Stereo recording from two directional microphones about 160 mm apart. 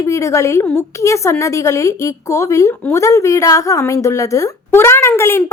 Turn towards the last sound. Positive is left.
turn(degrees=15)  # may be behind; listen again after turning